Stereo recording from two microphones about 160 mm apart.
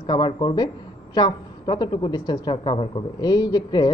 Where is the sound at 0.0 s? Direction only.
30° left (ahead or behind).